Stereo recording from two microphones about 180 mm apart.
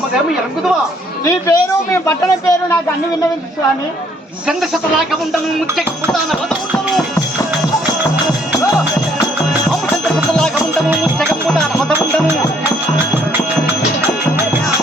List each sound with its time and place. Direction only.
1.2 s speech: 15° left (ahead or behind)
4.4 s speech: centre (ahead or behind)
10.2 s music: centre (ahead or behind)